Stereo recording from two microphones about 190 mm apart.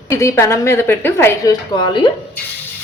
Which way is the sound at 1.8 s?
25° left (ahead or behind).